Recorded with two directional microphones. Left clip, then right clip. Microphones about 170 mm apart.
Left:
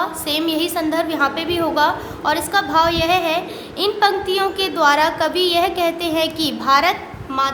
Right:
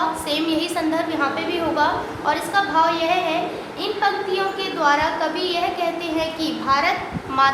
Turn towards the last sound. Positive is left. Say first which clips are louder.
# right 2 dB
turn(degrees=50)  # may be behind; listen again after turning